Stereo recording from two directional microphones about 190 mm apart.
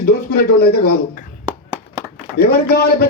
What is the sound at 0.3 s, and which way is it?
Speech, 55° left (ahead or behind).